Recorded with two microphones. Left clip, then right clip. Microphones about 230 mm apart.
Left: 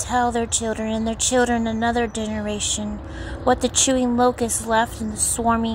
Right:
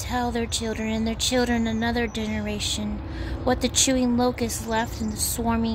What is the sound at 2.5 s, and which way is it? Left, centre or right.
Speech, centre.